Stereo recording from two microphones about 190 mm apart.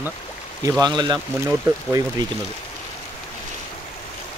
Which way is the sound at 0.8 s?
20° right (ahead or behind).